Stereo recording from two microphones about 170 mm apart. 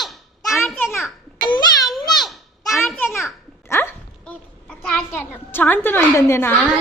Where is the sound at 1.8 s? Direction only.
Centre (ahead or behind).